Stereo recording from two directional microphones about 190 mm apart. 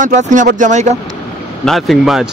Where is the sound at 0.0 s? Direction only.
40° right (ahead or behind).